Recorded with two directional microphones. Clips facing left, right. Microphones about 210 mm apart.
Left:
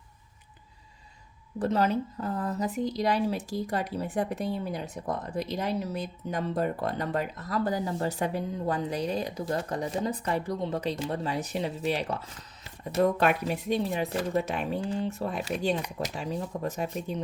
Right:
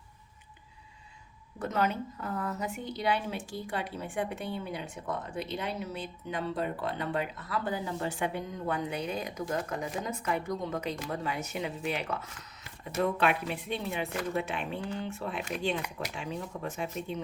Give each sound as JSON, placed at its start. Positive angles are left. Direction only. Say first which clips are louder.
{"t": 1.5, "sound": "a woman's voice", "louder": "left 5 dB", "side_deg": 30}